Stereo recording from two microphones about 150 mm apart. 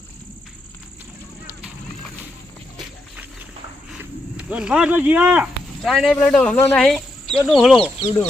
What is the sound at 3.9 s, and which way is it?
Speech, 5° right (ahead or behind).